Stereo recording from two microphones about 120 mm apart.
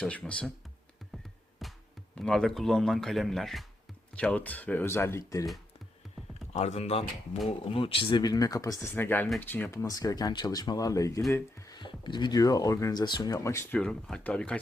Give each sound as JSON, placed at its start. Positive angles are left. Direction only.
{"t": 0.3, "sound": "speech", "side_deg": 10}
{"t": 1.6, "sound": "music", "side_deg": 0}
{"t": 2.1, "sound": "speech", "side_deg": 5}
{"t": 4.2, "sound": "speech", "side_deg": 10}
{"t": 6.5, "sound": "speech", "side_deg": 65}
{"t": 7.4, "sound": "speech", "side_deg": 50}
{"t": 8.2, "sound": "speech", "side_deg": 30}
{"t": 9.7, "sound": "speech", "side_deg": 30}
{"t": 11.3, "sound": "a sound", "side_deg": 25}
{"t": 11.8, "sound": "speech", "side_deg": 40}
{"t": 13.7, "sound": "speech", "side_deg": 5}